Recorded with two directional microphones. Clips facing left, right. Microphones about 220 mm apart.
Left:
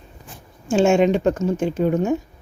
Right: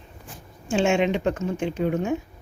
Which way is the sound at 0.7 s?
40° left (ahead or behind).